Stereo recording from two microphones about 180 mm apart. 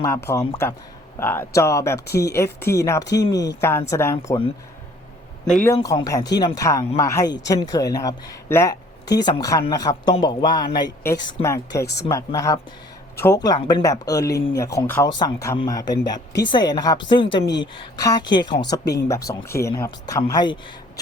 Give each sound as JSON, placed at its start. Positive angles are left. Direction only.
{"t": 0.3, "sound": "speech", "side_deg": 20}
{"t": 5.8, "sound": "a man's voice", "side_deg": 20}